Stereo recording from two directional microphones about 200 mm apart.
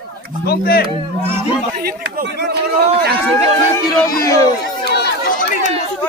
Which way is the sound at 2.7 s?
50° right (ahead or behind).